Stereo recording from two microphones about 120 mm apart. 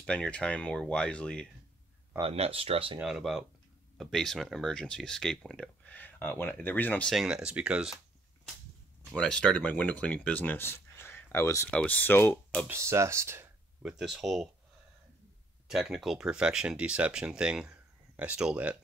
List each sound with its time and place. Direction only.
0.0 s speech: 5° left (ahead or behind)
2.2 s speech: 55° right (ahead or behind)
3.0 s speech: centre (ahead or behind)
5.9 s speech: 15° left (ahead or behind)
7.1 s speech: 5° right (ahead or behind)
9.1 s speech: 5° left (ahead or behind); by 11.7 s 25° left (ahead or behind)
11.7 s speech: 15° left (ahead or behind)
12.6 s speech: 25° right (ahead or behind)
13.8 s speech: 5° right (ahead or behind)
15.7 s speech: 5° right (ahead or behind)